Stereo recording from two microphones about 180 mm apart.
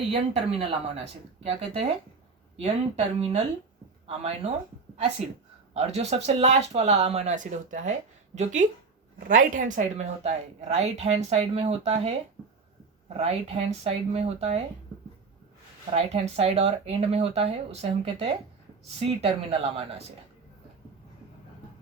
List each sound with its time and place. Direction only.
0.1 s speech: 30° right (ahead or behind)
13.1 s speech: 35° right (ahead or behind)
16.0 s speech: 35° right (ahead or behind)